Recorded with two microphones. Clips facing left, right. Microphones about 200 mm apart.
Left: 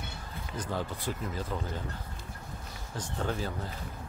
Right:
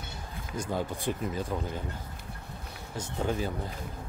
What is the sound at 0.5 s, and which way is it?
Speech, 15° right (ahead or behind).